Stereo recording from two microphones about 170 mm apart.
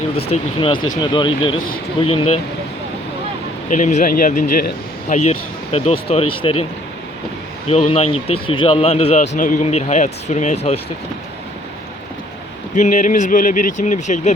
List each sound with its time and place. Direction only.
0.3 s speech: 30° left (ahead or behind)
3.7 s speech: 45° left (ahead or behind)
5.7 s speech: 35° left (ahead or behind)
7.7 s speech: 40° left (ahead or behind)
12.7 s speech: 45° left (ahead or behind)